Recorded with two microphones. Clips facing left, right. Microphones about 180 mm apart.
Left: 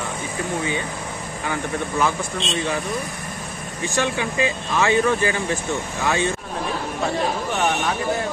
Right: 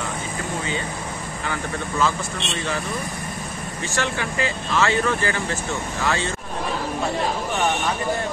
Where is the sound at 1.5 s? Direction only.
15° left (ahead or behind).